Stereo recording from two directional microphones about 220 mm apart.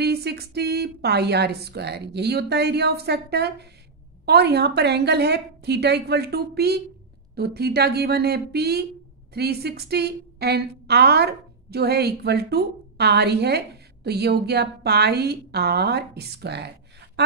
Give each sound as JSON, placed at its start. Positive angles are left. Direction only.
{"t": 0.0, "sound": "a woman's voice", "side_deg": -50}